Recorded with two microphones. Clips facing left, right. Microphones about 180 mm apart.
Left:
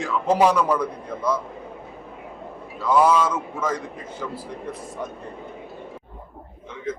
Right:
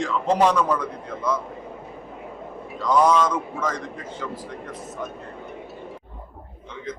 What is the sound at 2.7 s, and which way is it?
A man's voice, 5° left (ahead or behind).